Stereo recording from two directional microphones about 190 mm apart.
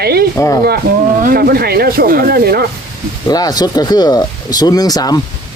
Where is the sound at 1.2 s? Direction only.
50° right (ahead or behind).